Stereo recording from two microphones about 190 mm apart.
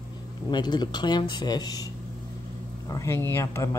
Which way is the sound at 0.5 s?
20° left (ahead or behind).